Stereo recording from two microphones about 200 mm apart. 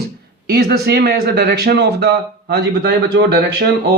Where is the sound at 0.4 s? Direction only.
50° right (ahead or behind).